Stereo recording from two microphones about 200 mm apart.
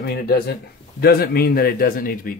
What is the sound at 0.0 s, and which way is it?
Speech, 50° left (ahead or behind).